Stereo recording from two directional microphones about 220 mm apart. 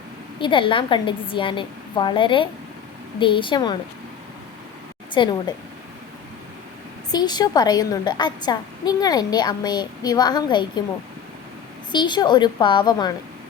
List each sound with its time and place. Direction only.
0.3 s a woman's voice: 20° left (ahead or behind)
5.1 s a woman's voice: 20° left (ahead or behind)
7.1 s a woman's voice: 20° left (ahead or behind)
11.9 s a woman's voice: 20° left (ahead or behind)